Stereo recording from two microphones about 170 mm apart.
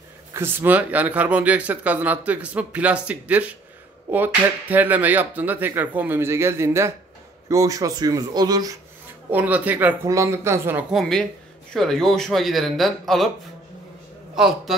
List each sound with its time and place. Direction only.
0.3 s speech: 15° right (ahead or behind)
9.3 s a man's voice: 10° right (ahead or behind)
14.3 s a man's voice: centre (ahead or behind)